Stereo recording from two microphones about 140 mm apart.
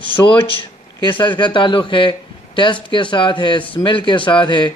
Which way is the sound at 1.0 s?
35° left (ahead or behind).